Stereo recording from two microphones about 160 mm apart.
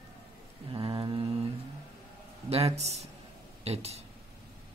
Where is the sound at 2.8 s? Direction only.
45° right (ahead or behind).